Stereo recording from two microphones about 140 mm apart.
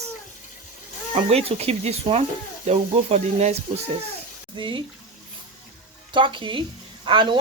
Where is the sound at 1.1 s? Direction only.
45° right (ahead or behind).